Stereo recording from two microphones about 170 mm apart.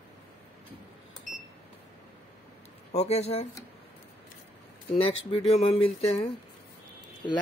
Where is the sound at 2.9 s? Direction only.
40° left (ahead or behind).